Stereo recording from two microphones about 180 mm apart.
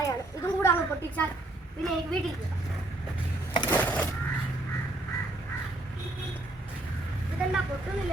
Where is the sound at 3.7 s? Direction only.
10° left (ahead or behind).